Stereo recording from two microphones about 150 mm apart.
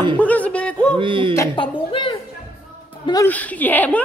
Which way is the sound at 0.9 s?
35° right (ahead or behind).